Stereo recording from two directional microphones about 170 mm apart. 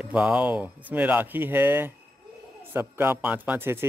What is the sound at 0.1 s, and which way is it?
A man's voice, 5° right (ahead or behind).